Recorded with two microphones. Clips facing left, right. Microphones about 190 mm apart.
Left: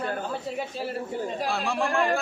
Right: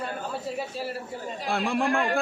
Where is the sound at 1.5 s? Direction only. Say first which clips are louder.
Right 5 dB; 55° right (ahead or behind).